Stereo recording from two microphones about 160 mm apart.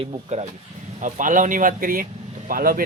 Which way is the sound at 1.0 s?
55° right (ahead or behind).